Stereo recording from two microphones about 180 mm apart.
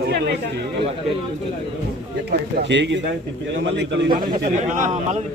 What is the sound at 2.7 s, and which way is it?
Speech, 80° right.